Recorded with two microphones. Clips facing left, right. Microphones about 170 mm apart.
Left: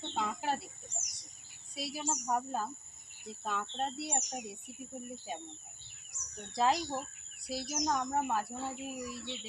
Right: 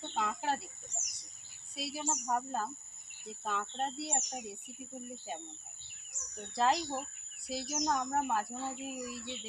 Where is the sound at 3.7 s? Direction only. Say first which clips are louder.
Even; centre (ahead or behind).